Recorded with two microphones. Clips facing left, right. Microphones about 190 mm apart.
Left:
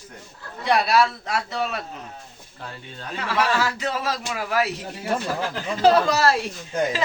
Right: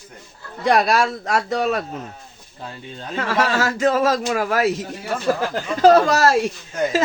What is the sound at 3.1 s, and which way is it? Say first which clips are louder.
A man's voice: right 3 dB; 45° right (ahead or behind).